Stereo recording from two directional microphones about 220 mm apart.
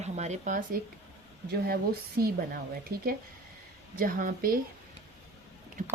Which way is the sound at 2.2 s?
45° right (ahead or behind).